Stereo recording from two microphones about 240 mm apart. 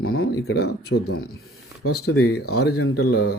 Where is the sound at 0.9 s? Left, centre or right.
Left.